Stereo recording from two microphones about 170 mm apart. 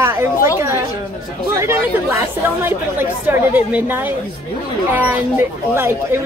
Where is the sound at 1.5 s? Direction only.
15° right (ahead or behind).